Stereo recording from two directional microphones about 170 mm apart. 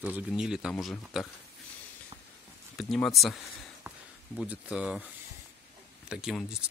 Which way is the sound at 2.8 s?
Centre (ahead or behind).